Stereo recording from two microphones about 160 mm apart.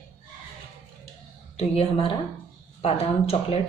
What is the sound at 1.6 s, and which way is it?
Speech, 35° left (ahead or behind).